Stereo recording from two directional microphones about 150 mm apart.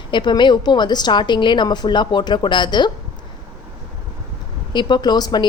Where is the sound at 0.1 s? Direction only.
30° left (ahead or behind).